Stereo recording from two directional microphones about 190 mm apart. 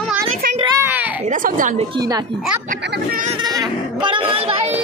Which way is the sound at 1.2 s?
45° right (ahead or behind).